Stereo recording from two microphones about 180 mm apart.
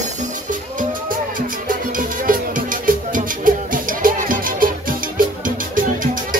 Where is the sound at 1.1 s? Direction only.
50° right (ahead or behind).